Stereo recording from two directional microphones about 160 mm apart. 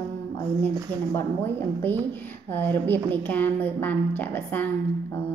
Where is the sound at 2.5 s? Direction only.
10° left (ahead or behind).